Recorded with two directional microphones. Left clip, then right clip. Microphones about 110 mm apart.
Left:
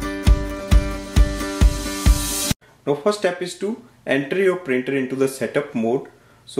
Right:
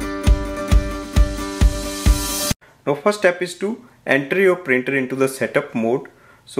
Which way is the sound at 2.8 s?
40° right (ahead or behind).